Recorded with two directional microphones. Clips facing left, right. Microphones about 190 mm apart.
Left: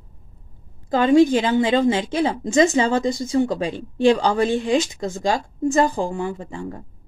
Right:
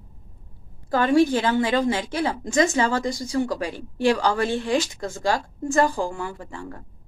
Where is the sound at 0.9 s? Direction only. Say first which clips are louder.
Left 4 dB; 20° left (ahead or behind).